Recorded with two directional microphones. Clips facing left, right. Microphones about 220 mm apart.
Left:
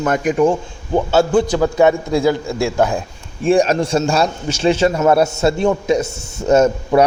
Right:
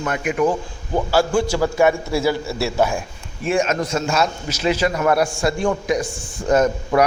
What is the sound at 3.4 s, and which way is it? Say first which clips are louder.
A man's voice: left 6 dB; 35° left (ahead or behind).